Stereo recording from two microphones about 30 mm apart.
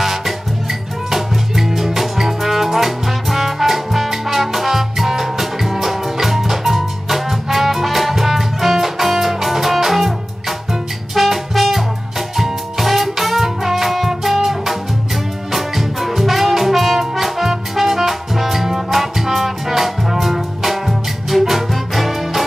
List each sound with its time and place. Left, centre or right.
0.0 s music: centre